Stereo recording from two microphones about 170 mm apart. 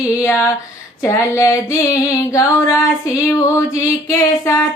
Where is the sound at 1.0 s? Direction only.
20° left (ahead or behind).